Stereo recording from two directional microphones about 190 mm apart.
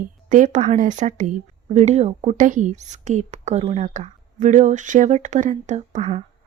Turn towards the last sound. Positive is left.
turn(degrees=-35)  # may be behind; listen again after turning